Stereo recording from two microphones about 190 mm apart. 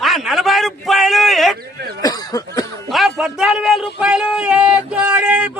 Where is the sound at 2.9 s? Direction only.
Centre (ahead or behind).